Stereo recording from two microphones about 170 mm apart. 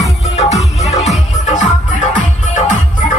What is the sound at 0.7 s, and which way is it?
Music, 40° left (ahead or behind).